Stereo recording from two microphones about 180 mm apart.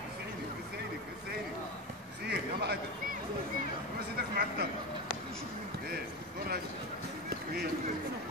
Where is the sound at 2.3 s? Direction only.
65° right (ahead or behind).